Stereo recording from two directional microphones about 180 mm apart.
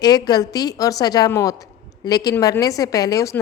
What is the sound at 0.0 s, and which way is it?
A woman's voice, 20° left (ahead or behind).